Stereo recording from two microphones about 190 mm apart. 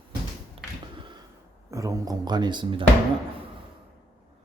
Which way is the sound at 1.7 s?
15° right (ahead or behind).